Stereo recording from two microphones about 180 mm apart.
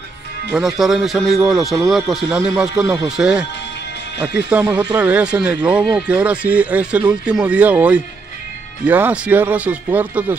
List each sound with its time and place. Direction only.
0.5 s speech: centre (ahead or behind)
4.6 s speech: 25° right (ahead or behind)
4.9 s speech: 10° right (ahead or behind)